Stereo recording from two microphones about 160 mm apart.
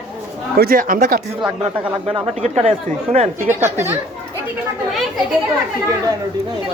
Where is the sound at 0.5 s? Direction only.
65° right (ahead or behind).